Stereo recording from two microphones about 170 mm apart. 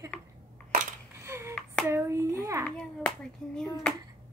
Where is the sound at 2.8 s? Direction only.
5° left (ahead or behind).